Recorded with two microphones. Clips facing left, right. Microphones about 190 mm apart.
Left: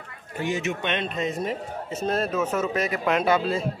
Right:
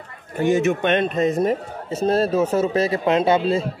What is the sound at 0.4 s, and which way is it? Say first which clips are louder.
A man's voice: right 9 dB; 50° right (ahead or behind).